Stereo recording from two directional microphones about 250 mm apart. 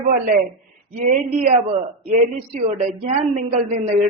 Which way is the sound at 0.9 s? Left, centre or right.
Right.